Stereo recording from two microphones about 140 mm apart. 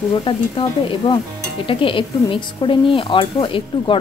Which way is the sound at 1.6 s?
40° left (ahead or behind).